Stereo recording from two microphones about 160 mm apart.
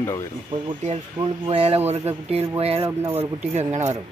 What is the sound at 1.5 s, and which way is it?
Speech, 35° right (ahead or behind).